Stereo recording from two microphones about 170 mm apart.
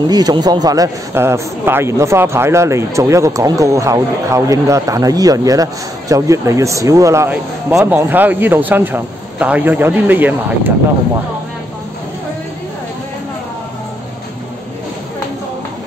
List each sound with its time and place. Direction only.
0.0 s a man's voice: 25° right (ahead or behind)